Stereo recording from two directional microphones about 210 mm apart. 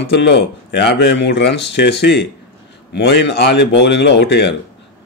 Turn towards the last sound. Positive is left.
turn(degrees=55)  # may be behind; listen again after turning